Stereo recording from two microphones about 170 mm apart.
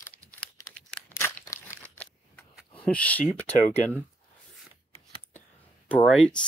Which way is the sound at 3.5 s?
40° left (ahead or behind).